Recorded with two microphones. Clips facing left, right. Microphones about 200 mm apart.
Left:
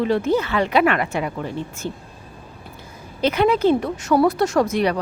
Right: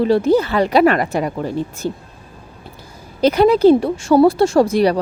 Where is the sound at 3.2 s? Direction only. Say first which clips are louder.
Right 6 dB; 35° right (ahead or behind).